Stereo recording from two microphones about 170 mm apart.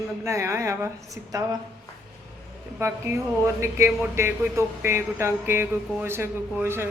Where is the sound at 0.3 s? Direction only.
15° right (ahead or behind).